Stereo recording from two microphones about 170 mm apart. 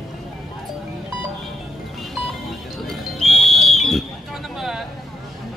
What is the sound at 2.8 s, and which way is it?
Music, centre (ahead or behind).